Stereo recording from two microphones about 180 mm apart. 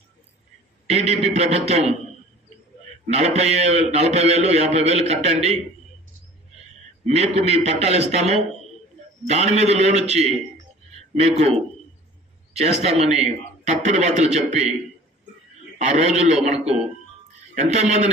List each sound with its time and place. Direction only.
0.8 s a man's voice: 35° right (ahead or behind)
3.1 s a man's voice: 35° right (ahead or behind)
7.2 s a man's voice: 35° right (ahead or behind)
12.5 s a man's voice: 35° right (ahead or behind)
15.8 s a man's voice: 40° right (ahead or behind)